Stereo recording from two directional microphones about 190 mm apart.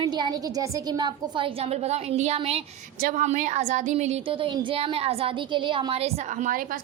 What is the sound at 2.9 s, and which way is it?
A woman's voice, 45° right (ahead or behind).